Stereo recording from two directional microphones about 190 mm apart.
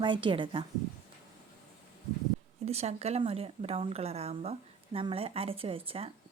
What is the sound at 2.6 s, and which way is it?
A woman's voice, 35° right (ahead or behind).